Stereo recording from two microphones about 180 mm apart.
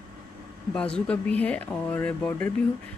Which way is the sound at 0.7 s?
5° left (ahead or behind).